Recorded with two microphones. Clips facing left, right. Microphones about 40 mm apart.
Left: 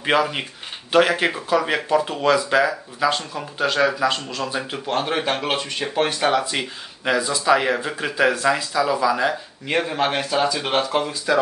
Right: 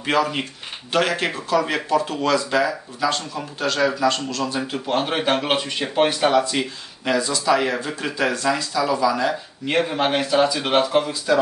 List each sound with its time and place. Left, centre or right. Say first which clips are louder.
0.0 s speech: left 1 dB; centre
4.8 s speech: right 1 dB; centre
6.0 s speech: right 3 dB; centre
9.7 s speech: right 1 dB; centre